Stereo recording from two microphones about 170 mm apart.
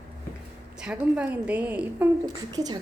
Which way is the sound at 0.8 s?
5° right (ahead or behind).